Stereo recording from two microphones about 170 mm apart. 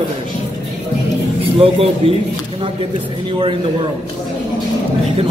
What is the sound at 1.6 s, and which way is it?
Speech, 35° right (ahead or behind).